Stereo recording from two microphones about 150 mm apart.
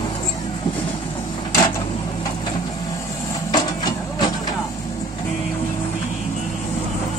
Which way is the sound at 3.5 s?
30° left (ahead or behind).